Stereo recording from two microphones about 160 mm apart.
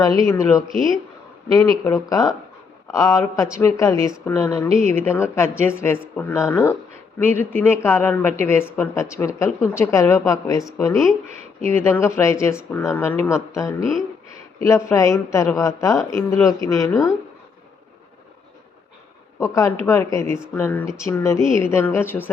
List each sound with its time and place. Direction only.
0.2 s a woman's voice: 20° left (ahead or behind)
19.4 s a woman's voice: 20° left (ahead or behind)